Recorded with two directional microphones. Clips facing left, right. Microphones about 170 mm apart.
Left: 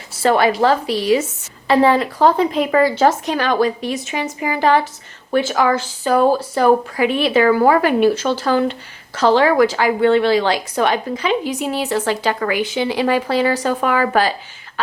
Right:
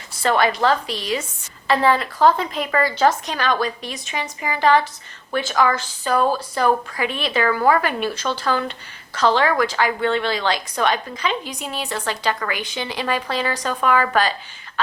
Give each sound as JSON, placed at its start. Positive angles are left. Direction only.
{"t": 0.2, "sound": "speech", "side_deg": 10}